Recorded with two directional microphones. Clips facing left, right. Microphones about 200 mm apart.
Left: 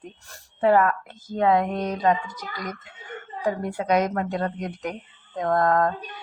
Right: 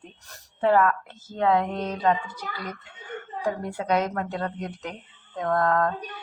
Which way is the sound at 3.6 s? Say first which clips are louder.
Left 3 dB; 10° left (ahead or behind).